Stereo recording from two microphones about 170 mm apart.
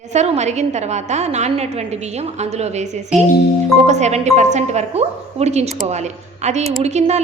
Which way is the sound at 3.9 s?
40° right (ahead or behind).